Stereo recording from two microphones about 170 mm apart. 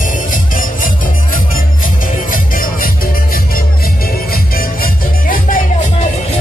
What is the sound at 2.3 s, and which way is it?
Music, 55° left (ahead or behind).